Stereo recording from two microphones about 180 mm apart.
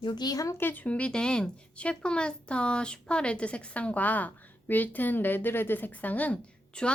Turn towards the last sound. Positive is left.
turn(degrees=5)  # may be behind; listen again after turning